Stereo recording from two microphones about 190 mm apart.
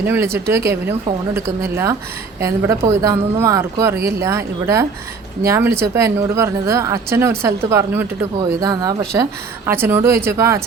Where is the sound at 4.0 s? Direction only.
55° right (ahead or behind).